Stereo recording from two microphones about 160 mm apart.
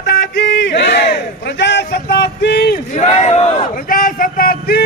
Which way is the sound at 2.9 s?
45° left (ahead or behind).